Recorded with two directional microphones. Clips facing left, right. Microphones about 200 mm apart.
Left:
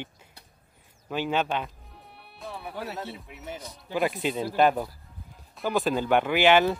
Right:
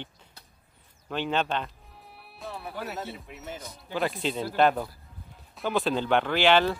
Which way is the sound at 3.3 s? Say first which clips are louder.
Left 1 dB; 15° left (ahead or behind).